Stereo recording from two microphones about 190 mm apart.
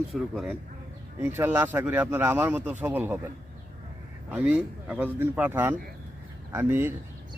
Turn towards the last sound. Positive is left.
turn(degrees=-10)  # may be behind; listen again after turning